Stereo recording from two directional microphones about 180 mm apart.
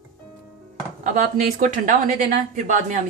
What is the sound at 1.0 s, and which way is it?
A woman's voice, 45° right (ahead or behind).